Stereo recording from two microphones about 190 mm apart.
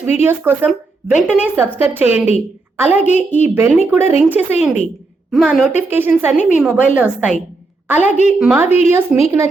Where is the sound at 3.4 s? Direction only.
10° right (ahead or behind).